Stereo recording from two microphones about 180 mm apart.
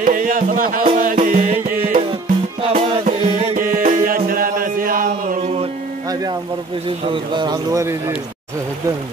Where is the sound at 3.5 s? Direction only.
50° right (ahead or behind).